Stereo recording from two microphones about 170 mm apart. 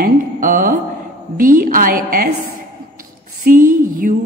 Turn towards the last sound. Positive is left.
turn(degrees=-55)  # may be behind; listen again after turning